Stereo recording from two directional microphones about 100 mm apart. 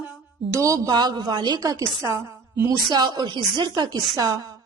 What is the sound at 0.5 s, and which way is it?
A woman's voice, 35° right (ahead or behind).